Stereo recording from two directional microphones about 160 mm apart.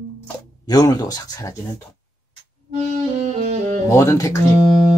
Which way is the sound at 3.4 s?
50° right (ahead or behind).